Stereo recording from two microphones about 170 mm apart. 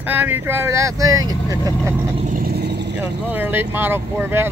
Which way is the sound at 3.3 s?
10° right (ahead or behind).